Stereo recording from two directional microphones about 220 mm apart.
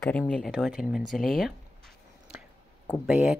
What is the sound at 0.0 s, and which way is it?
Speech, 5° left (ahead or behind).